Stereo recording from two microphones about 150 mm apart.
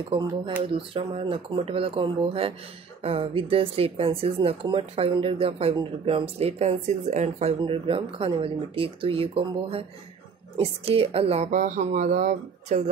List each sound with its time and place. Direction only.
0.7 s speech: 35° right (ahead or behind); by 12.7 s 65° right (ahead or behind)